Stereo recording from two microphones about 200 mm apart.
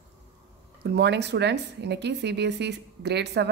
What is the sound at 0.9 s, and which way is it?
Speech, 55° right (ahead or behind).